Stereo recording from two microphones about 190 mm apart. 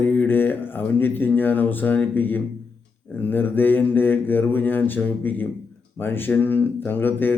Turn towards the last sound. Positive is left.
turn(degrees=10)  # may be behind; listen again after turning